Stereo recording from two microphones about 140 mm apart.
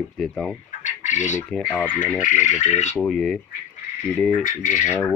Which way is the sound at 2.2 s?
60° left (ahead or behind).